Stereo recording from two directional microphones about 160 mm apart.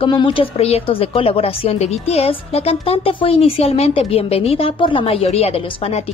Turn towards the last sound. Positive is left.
turn(degrees=40)  # may be behind; listen again after turning